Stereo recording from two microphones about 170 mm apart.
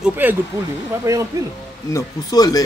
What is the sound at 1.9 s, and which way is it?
Speech, 20° left (ahead or behind).